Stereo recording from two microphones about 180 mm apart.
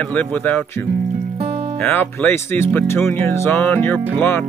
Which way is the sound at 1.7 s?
10° left (ahead or behind).